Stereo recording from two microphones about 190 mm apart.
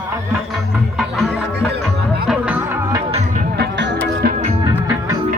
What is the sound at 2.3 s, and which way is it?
Music, 10° right (ahead or behind).